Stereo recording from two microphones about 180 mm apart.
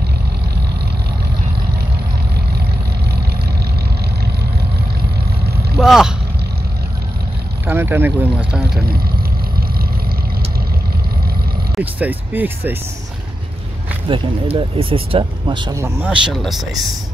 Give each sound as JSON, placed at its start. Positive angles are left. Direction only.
{"t": 5.8, "sound": "speech", "side_deg": 0}
{"t": 7.6, "sound": "speech", "side_deg": -10}
{"t": 11.7, "sound": "speech", "side_deg": -10}
{"t": 14.0, "sound": "speech", "side_deg": -30}